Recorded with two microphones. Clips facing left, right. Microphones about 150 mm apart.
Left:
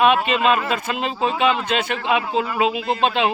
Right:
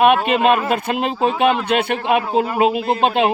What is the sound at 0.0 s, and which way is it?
Speech, 55° right (ahead or behind).